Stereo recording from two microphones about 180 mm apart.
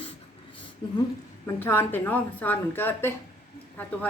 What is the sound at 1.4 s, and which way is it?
A woman's voice, 15° left (ahead or behind).